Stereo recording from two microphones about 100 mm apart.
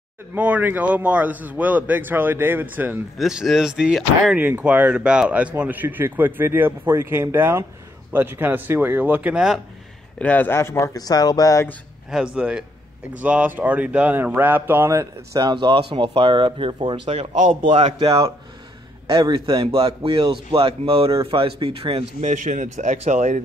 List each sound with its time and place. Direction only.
0.3 s a man's voice: 15° right (ahead or behind)
3.2 s speech: 5° right (ahead or behind)
4.4 s speech: 15° right (ahead or behind)
10.1 s speech: 15° left (ahead or behind); by 11.6 s 35° left (ahead or behind)
12.4 s a man's voice: 10° right (ahead or behind)
14.9 s speech: 35° right (ahead or behind)
15.5 s a man's voice: 55° right (ahead or behind); by 17.9 s 90° right
17.9 s a man's voice: 60° right (ahead or behind)
19.0 s a man's voice: 50° right (ahead or behind)
22.5 s speech: 90° right